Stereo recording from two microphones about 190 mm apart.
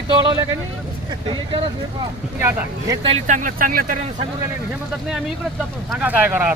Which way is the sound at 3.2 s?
45° right (ahead or behind).